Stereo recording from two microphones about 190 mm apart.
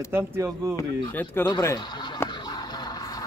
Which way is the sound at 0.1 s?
15° right (ahead or behind).